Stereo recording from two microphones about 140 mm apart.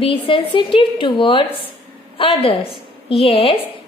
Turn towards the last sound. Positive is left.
turn(degrees=45)  # may be behind; listen again after turning